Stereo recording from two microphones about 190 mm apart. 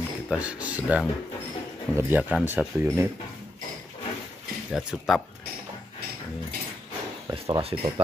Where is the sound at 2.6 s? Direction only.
Centre (ahead or behind).